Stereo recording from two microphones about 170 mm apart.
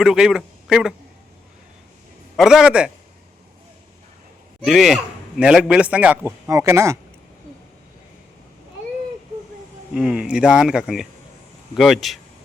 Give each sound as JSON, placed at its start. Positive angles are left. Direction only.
{"t": 0.0, "sound": "a man's voice", "side_deg": -5}
{"t": 2.3, "sound": "speech", "side_deg": -5}
{"t": 4.6, "sound": "a man's voice", "side_deg": 0}
{"t": 9.9, "sound": "speech", "side_deg": -5}